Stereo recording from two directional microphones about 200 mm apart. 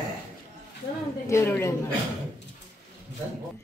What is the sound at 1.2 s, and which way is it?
Speech, 15° left (ahead or behind).